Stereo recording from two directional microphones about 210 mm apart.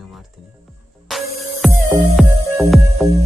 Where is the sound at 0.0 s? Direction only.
Centre (ahead or behind).